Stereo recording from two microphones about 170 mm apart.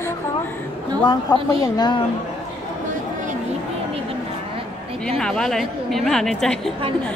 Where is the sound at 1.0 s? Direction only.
25° left (ahead or behind).